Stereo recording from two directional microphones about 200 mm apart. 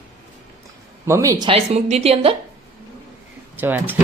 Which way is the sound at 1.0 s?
15° right (ahead or behind).